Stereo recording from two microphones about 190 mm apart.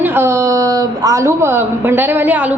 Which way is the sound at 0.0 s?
10° right (ahead or behind).